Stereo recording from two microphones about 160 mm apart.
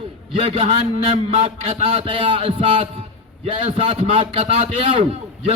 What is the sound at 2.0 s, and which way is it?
A man's voice, 35° right (ahead or behind).